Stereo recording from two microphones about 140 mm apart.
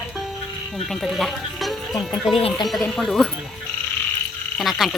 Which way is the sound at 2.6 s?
Centre (ahead or behind).